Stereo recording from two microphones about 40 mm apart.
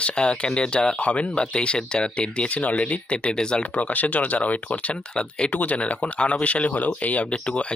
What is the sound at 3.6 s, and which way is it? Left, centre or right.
Speech, left.